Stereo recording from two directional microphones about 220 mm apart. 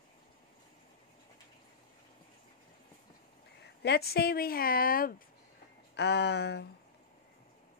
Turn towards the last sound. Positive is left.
turn(degrees=50)  # may be behind; listen again after turning